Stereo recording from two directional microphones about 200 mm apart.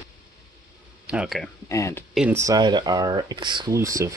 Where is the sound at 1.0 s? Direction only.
5° right (ahead or behind).